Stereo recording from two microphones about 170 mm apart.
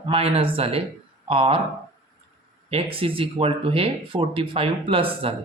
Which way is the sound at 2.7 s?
35° right (ahead or behind).